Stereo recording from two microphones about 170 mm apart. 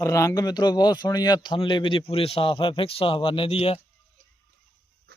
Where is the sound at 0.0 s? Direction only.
15° left (ahead or behind); by 3.8 s 35° left (ahead or behind).